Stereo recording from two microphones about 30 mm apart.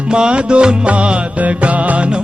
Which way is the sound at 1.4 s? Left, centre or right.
Right.